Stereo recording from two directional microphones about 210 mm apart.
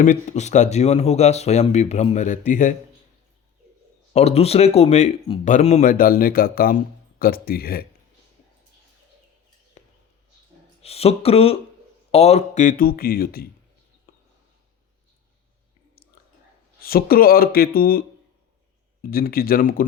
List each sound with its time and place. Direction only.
0.0 s speech: 35° left (ahead or behind)
4.1 s speech: 30° left (ahead or behind); by 7.9 s 45° left (ahead or behind)
9.8 s a sound: 35° left (ahead or behind)
10.8 s speech: 30° left (ahead or behind); by 13.5 s 45° left (ahead or behind)
14.1 s a sound: 45° left (ahead or behind)
16.8 s speech: 45° left (ahead or behind)
19.1 s speech: 45° left (ahead or behind)